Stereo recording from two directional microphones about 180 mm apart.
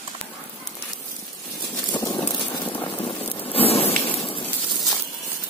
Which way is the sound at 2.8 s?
30° left (ahead or behind).